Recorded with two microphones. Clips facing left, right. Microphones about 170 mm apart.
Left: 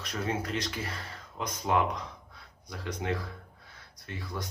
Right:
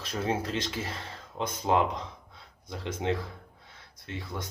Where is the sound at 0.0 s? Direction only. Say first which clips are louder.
Right 3 dB; 30° right (ahead or behind).